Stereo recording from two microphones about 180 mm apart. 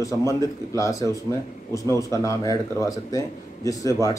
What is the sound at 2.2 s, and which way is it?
Speech, 20° left (ahead or behind).